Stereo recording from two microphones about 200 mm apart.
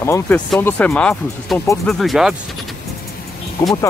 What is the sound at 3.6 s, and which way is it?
Speech, 15° left (ahead or behind).